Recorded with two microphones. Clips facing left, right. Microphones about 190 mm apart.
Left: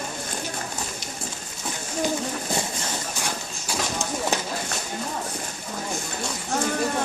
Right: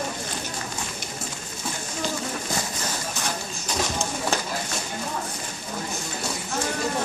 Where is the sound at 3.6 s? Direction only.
15° left (ahead or behind).